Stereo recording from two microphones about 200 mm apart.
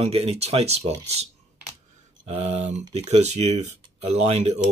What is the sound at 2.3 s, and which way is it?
Speech, 30° right (ahead or behind).